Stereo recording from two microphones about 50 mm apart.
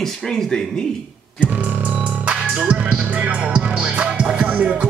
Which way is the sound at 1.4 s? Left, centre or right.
Right.